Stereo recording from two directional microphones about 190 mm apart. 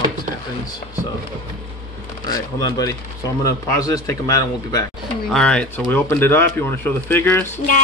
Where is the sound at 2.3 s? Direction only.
20° left (ahead or behind).